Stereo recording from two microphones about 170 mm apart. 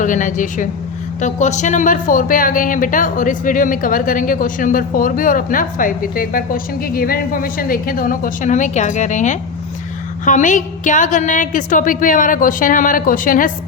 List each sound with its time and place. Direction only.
0.0 s speech: 50° left (ahead or behind)